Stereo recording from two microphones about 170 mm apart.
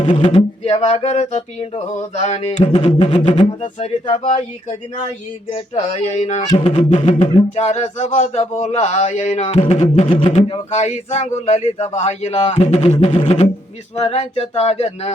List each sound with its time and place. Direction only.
0.3 s speech: 40° left (ahead or behind)
3.4 s speech: 45° left (ahead or behind)
5.5 s speech: 35° left (ahead or behind)
10.1 s speech: 30° left (ahead or behind)
13.1 s didgeridoo: 25° left (ahead or behind)
13.9 s speech: 40° left (ahead or behind)